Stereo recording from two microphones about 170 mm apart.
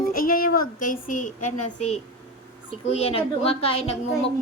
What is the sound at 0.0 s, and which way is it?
A woman's voice, 55° left (ahead or behind).